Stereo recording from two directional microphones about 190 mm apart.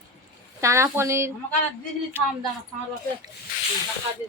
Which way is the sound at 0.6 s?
15° right (ahead or behind).